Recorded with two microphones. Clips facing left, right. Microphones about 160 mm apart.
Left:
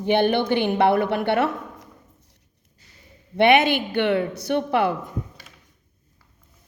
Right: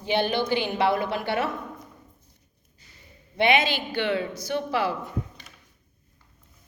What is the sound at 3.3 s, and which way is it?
Speech, 60° left (ahead or behind).